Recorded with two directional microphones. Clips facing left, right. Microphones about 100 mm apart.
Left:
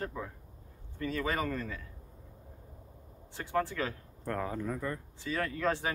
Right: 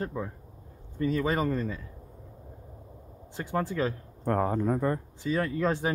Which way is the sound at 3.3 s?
15° right (ahead or behind).